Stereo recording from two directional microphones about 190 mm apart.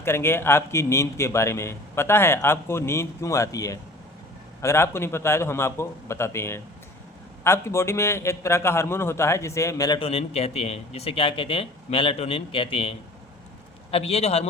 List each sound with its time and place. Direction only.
0.0 s a man's voice: 15° left (ahead or behind)
10.0 s a man's voice: 30° left (ahead or behind)